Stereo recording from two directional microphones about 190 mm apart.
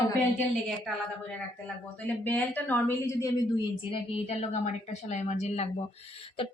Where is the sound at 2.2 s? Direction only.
10° left (ahead or behind).